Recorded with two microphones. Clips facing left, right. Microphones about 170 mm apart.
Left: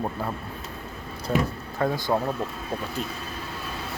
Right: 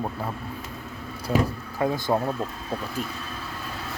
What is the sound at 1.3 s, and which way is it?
Speech, 5° right (ahead or behind).